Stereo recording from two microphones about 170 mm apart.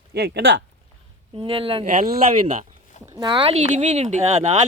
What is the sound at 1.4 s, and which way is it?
Speech, 30° right (ahead or behind).